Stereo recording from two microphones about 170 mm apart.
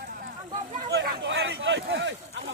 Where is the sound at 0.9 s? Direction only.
85° right.